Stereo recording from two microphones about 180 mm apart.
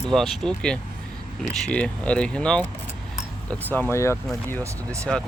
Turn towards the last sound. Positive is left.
turn(degrees=-15)  # may be behind; listen again after turning